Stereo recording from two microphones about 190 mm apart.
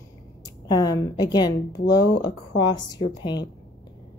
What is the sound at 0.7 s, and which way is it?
A woman's voice, 20° left (ahead or behind).